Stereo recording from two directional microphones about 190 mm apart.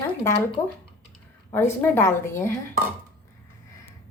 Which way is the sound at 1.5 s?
10° left (ahead or behind).